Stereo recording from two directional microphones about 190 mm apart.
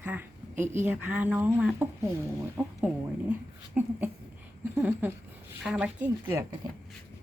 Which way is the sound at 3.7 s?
5° right (ahead or behind).